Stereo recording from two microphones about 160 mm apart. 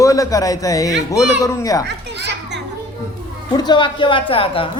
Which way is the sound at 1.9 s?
90° right.